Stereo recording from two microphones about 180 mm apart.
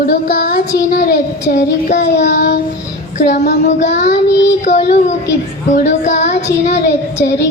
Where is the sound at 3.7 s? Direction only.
40° left (ahead or behind).